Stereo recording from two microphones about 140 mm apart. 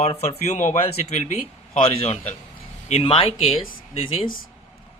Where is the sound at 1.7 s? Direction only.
40° left (ahead or behind).